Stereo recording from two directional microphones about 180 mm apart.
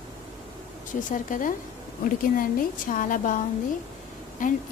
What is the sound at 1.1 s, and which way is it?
Speech, 45° left (ahead or behind).